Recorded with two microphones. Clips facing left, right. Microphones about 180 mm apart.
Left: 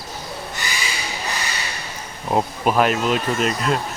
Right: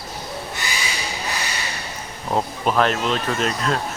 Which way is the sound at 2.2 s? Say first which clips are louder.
Left 2 dB; 10° left (ahead or behind).